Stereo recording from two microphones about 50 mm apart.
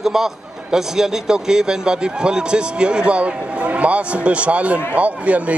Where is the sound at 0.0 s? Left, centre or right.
Centre.